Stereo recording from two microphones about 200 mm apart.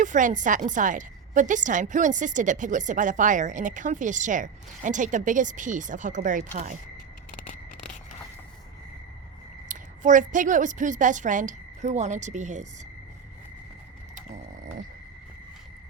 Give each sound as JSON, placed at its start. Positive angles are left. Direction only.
{"t": 0.0, "sound": "a woman's voice", "side_deg": -40}
{"t": 7.3, "sound": "scissors", "side_deg": 40}
{"t": 9.6, "sound": "a woman's voice", "side_deg": -40}